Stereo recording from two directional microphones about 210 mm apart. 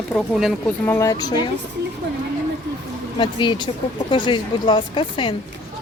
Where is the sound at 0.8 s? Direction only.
15° left (ahead or behind).